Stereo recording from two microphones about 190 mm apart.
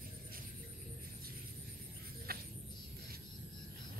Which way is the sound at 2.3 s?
55° right (ahead or behind).